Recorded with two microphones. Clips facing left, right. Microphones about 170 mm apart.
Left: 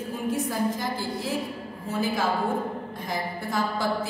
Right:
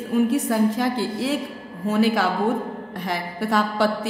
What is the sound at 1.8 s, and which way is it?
A woman's voice, 85° right.